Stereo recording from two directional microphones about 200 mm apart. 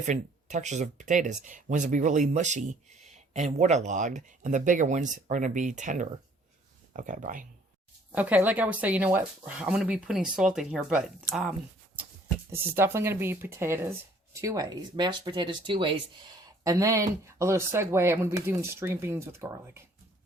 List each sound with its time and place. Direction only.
0.0 s speech: 35° right (ahead or behind)
8.1 s speech: 5° right (ahead or behind)